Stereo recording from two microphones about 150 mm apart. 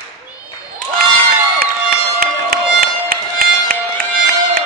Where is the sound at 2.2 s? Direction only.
75° right (ahead or behind).